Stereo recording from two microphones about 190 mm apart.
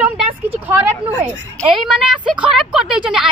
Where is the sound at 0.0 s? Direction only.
10° right (ahead or behind).